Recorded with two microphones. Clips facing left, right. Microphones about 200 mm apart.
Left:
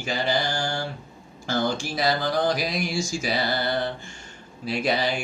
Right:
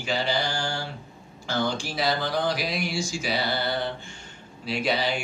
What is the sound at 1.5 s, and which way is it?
Speech, 45° left (ahead or behind).